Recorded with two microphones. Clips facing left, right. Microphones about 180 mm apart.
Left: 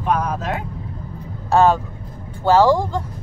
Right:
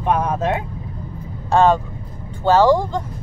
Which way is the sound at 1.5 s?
10° left (ahead or behind).